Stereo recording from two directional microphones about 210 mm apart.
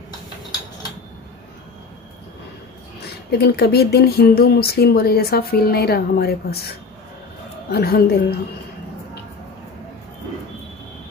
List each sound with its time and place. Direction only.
3.3 s speech: 50° left (ahead or behind)
7.7 s speech: 50° left (ahead or behind)